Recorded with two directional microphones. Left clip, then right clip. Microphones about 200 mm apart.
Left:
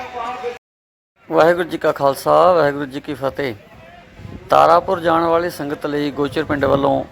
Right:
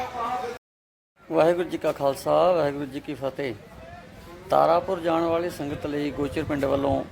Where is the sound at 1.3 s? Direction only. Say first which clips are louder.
Left 7 dB; 20° left (ahead or behind).